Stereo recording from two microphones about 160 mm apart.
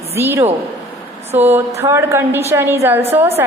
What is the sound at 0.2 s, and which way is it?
Speech, 15° right (ahead or behind).